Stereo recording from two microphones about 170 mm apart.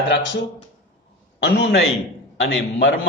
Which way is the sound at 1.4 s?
90° left.